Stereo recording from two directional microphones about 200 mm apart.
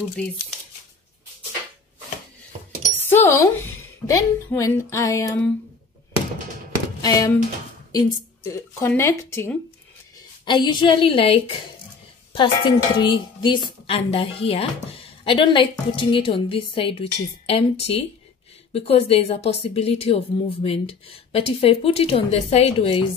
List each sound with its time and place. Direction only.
3.1 s speech: 10° left (ahead or behind)
7.0 s speech: 20° left (ahead or behind)